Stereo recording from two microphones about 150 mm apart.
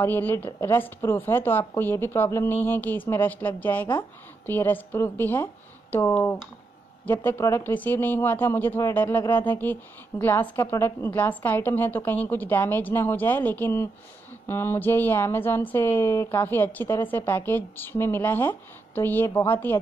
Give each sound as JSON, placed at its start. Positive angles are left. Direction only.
{"t": 0.0, "sound": "speech", "side_deg": 15}